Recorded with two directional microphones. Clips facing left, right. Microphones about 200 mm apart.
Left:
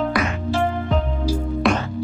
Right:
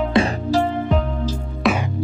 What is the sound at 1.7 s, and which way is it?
Music, centre (ahead or behind).